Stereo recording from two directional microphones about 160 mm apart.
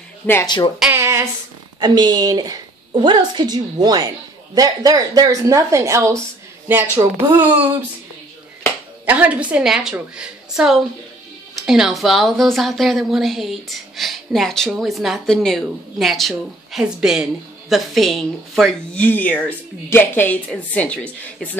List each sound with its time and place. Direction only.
0.9 s a sound: 15° right (ahead or behind)
1.8 s a woman's voice: 25° right (ahead or behind)
9.0 s a woman's voice: 10° right (ahead or behind); by 21.5 s 10° left (ahead or behind)